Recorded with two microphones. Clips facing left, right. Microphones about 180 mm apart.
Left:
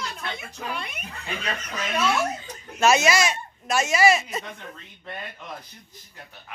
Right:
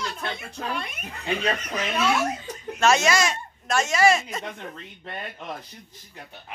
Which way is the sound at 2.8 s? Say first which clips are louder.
Left 1 dB; 5° left (ahead or behind).